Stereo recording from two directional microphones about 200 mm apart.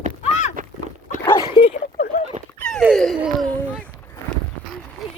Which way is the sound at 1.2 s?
25° left (ahead or behind).